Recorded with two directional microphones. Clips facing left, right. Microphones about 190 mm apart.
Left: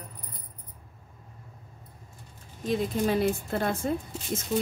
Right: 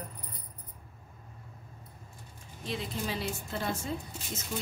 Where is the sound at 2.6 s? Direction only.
50° left (ahead or behind).